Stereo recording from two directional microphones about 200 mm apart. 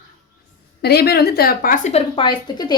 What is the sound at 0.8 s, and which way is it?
A woman's voice, 50° left (ahead or behind).